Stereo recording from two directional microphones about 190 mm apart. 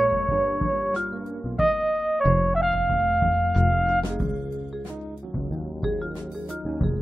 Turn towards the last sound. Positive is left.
turn(degrees=0)  # may be behind; listen again after turning